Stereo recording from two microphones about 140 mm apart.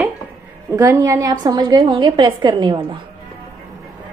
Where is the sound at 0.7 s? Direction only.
20° right (ahead or behind).